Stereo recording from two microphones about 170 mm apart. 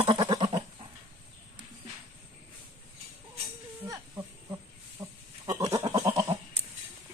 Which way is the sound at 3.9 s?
20° right (ahead or behind).